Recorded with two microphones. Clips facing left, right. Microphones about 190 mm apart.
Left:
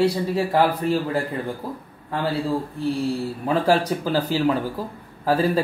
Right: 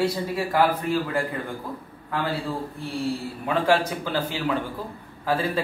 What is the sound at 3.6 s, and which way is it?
Speech, 40° left (ahead or behind).